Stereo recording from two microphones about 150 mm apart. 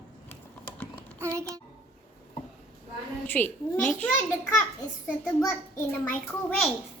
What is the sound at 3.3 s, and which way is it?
Speech, 10° left (ahead or behind).